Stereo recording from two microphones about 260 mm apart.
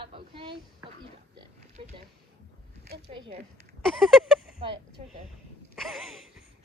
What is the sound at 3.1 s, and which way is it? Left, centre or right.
Speech, right.